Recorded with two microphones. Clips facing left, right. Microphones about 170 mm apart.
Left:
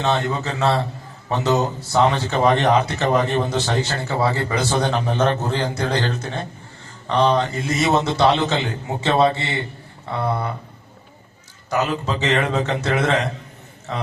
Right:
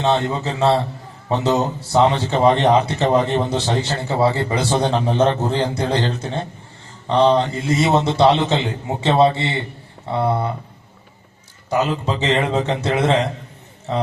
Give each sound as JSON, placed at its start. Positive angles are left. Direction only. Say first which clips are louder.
{"t": 0.0, "sound": "speech", "louder": "right 2 dB", "side_deg": -25}
{"t": 11.7, "sound": "speech", "louder": "right 2 dB", "side_deg": -25}